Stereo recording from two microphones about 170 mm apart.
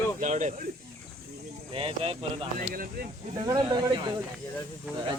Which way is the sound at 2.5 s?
55° right (ahead or behind).